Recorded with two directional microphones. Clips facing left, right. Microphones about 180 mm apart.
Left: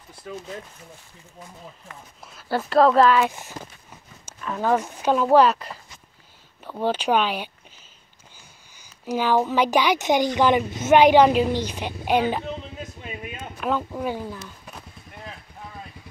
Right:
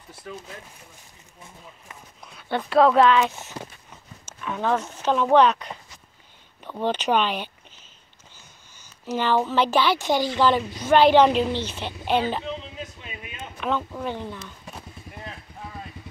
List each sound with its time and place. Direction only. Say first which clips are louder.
2.3 s speech: left 1 dB; centre (ahead or behind)
9.0 s speech: left 1 dB; 10° left (ahead or behind)
12.4 s vehicle: even; 50° left (ahead or behind)
13.6 s speech: left 1 dB; 5° left (ahead or behind)
14.8 s a sound: right 3 dB; centre (ahead or behind)